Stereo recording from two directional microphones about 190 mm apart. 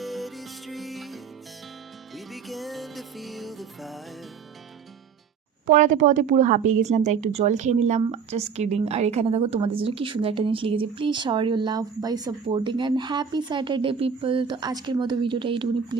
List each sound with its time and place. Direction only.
0.0 s music: centre (ahead or behind)
5.6 s speech: 40° right (ahead or behind)